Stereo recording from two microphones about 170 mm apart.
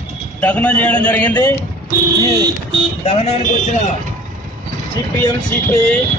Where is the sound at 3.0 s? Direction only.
40° left (ahead or behind).